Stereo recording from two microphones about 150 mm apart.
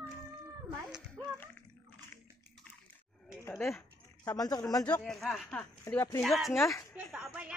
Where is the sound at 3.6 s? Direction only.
15° left (ahead or behind).